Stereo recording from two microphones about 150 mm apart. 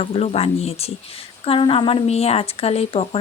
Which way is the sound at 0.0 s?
40° left (ahead or behind).